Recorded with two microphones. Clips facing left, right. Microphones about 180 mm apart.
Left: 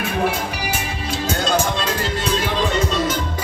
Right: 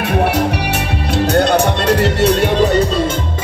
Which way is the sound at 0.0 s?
65° right (ahead or behind).